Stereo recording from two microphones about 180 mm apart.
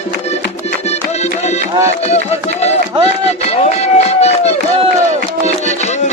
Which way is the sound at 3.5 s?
35° left (ahead or behind).